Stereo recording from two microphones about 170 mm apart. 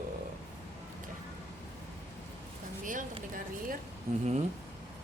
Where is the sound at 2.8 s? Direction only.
50° right (ahead or behind).